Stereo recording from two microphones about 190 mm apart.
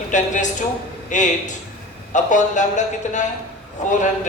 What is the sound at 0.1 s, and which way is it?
Speech, 40° left (ahead or behind).